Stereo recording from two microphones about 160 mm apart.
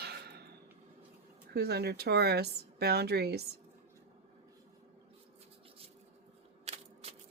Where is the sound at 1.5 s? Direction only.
90° right.